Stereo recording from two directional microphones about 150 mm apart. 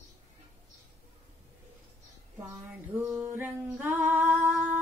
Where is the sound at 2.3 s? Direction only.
15° right (ahead or behind).